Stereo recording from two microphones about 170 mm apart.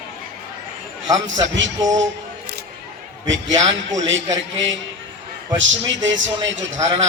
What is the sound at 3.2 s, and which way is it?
A man's voice, 90° right.